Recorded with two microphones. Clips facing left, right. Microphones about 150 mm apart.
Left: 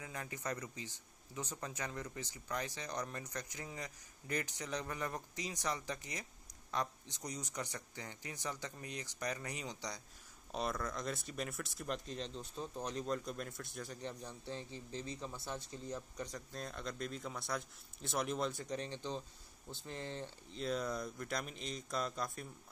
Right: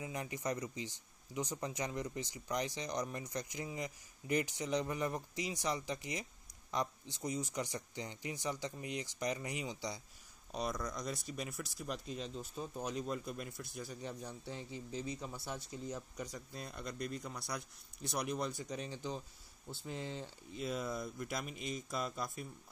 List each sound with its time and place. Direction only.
0.0 s speech: 20° right (ahead or behind)
10.5 s speech: centre (ahead or behind)
20.6 s speech: centre (ahead or behind)